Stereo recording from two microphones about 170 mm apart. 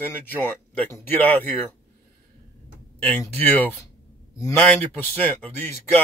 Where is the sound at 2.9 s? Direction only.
10° left (ahead or behind).